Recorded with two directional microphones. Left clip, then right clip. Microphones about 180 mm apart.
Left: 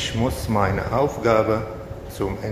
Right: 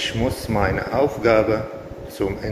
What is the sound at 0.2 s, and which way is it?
A man's voice, 5° left (ahead or behind).